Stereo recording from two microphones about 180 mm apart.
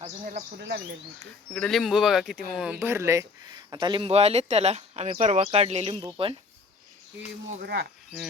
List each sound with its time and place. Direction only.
0.6 s speech: 90° right
1.5 s speech: centre (ahead or behind); by 6.3 s 30° right (ahead or behind)
7.6 s speech: 65° right (ahead or behind)